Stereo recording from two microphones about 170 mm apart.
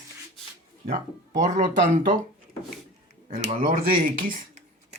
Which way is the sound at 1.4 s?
45° right (ahead or behind).